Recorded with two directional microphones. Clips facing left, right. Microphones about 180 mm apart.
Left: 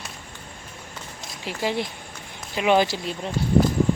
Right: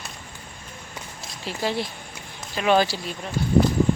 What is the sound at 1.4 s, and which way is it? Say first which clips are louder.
Speech: even; 15° left (ahead or behind).